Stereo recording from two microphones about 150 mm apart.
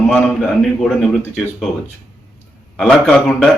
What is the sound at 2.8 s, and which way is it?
Speech, 5° left (ahead or behind).